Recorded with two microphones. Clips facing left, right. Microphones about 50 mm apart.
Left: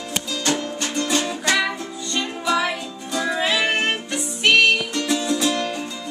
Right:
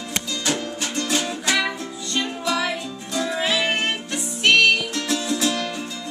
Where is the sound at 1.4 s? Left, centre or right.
Centre.